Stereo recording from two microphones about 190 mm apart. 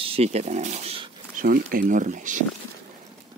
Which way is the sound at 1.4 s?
50° right (ahead or behind).